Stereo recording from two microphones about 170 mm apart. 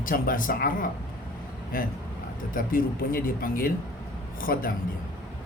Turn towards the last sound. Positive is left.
turn(degrees=55)  # may be behind; listen again after turning